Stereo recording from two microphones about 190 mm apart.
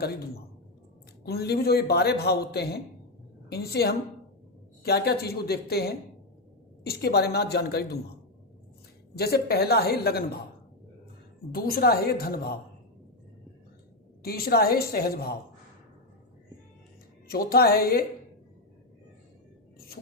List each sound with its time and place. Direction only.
0.0 s a man's voice: 55° left (ahead or behind)
9.1 s a man's voice: 55° left (ahead or behind)
11.5 s a woman's voice: 50° left (ahead or behind)
14.2 s a woman's voice: 50° left (ahead or behind)
17.2 s a woman's voice: 50° left (ahead or behind)